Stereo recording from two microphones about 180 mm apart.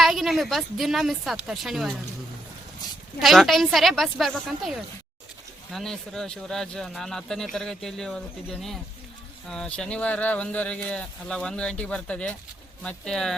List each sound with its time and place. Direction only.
0.0 s speech: centre (ahead or behind)
3.2 s speech: centre (ahead or behind)
9.5 s speech: 5° left (ahead or behind)